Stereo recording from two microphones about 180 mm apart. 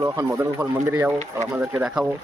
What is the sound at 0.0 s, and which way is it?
A man's voice, 20° right (ahead or behind).